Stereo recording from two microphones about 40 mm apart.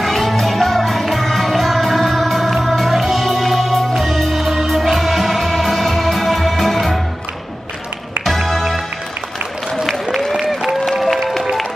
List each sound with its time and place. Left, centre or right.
0.0 s music: centre
8.3 s music: centre
9.8 s applause: centre